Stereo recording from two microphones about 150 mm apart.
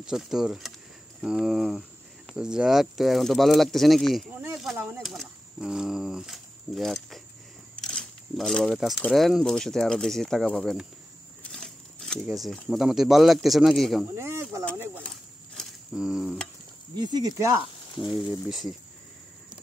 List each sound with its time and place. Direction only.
0.0 s speech: 5° right (ahead or behind)
4.7 s speech: 15° right (ahead or behind)
5.0 s speech: centre (ahead or behind)
7.8 s a sound: centre (ahead or behind)
9.0 s speech: centre (ahead or behind)
11.5 s a sound: 5° left (ahead or behind)
12.3 s speech: centre (ahead or behind)
14.1 s speech: 20° right (ahead or behind)
15.9 s speech: 5° right (ahead or behind)
16.9 s speech: 25° right (ahead or behind)
18.5 s speech: centre (ahead or behind)